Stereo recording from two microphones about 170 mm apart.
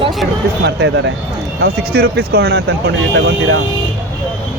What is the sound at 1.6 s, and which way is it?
Speech, 70° right (ahead or behind).